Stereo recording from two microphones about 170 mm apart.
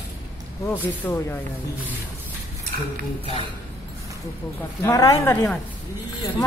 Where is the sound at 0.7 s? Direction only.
10° left (ahead or behind).